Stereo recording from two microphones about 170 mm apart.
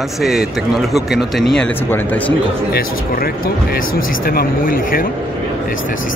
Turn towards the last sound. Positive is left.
turn(degrees=55)  # may be behind; listen again after turning